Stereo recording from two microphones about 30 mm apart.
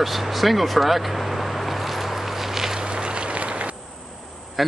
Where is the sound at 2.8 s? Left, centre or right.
Right.